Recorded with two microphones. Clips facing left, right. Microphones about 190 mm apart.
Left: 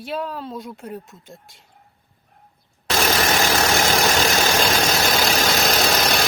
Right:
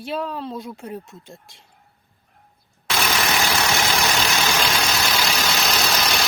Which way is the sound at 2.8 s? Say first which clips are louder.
Left 3 dB; 40° left (ahead or behind).